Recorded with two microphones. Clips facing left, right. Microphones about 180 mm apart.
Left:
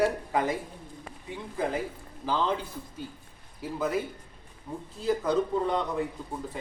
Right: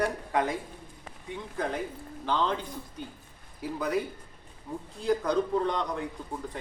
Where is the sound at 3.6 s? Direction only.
Centre (ahead or behind).